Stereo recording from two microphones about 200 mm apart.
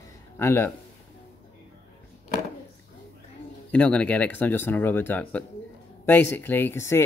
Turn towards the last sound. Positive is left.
turn(degrees=15)  # may be behind; listen again after turning